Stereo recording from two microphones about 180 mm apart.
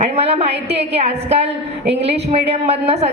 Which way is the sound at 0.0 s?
35° right (ahead or behind).